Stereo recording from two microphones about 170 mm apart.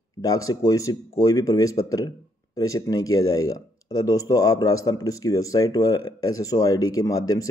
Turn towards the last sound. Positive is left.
turn(degrees=20)  # may be behind; listen again after turning